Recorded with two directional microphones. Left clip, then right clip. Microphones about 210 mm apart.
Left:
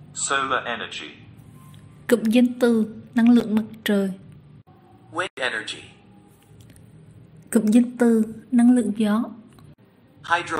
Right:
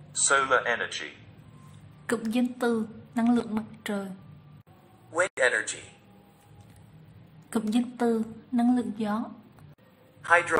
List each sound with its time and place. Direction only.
0.2 s a man's voice: 20° right (ahead or behind)
2.0 s a woman's voice: 10° left (ahead or behind)
5.1 s a man's voice: 25° right (ahead or behind)
7.4 s a woman's voice: 15° left (ahead or behind)
10.2 s a man's voice: 15° right (ahead or behind)